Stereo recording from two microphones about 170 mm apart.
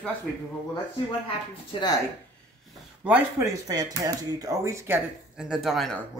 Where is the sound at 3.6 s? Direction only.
20° right (ahead or behind); by 5.9 s centre (ahead or behind).